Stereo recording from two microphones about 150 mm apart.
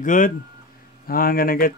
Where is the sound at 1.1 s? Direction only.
75° left (ahead or behind).